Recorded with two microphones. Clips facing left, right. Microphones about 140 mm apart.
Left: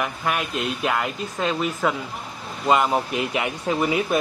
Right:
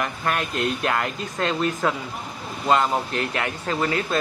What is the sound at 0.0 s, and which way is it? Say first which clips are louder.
Speech: even; 10° left (ahead or behind).